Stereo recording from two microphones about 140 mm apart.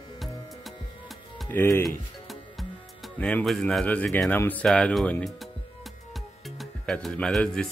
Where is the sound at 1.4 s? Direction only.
15° left (ahead or behind).